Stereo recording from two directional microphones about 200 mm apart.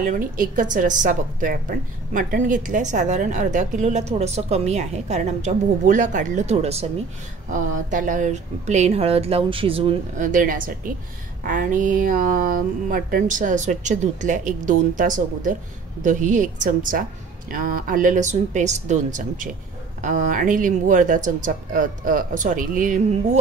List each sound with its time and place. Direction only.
0.0 s a woman's voice: 40° right (ahead or behind)
10.2 s a woman's voice: 40° right (ahead or behind)